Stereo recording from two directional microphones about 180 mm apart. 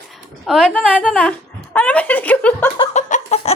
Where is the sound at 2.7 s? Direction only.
35° left (ahead or behind).